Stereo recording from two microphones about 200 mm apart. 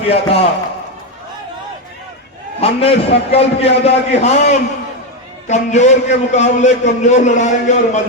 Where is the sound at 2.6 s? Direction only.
30° left (ahead or behind).